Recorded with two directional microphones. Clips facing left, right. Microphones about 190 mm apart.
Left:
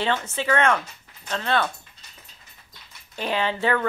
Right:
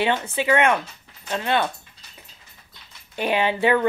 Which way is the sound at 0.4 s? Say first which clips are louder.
Right 2 dB; 15° right (ahead or behind).